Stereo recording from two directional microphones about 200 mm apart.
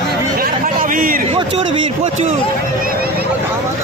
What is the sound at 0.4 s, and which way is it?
Chatter, 45° right (ahead or behind).